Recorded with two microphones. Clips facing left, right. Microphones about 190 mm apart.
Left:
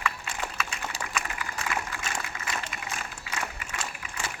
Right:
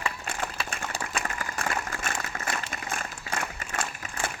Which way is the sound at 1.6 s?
55° right (ahead or behind).